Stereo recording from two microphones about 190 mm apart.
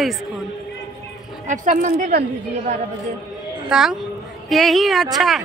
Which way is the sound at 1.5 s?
40° right (ahead or behind).